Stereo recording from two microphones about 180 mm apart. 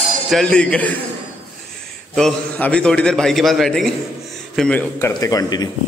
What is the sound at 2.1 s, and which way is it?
A man's voice, 5° left (ahead or behind).